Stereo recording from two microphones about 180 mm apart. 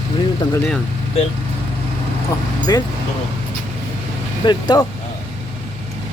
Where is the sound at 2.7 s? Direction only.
20° left (ahead or behind).